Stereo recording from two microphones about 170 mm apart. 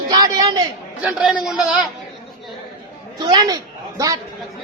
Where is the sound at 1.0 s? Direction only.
5° right (ahead or behind).